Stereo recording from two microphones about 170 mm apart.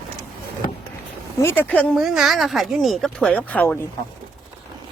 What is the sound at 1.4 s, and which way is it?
Speech, 15° left (ahead or behind).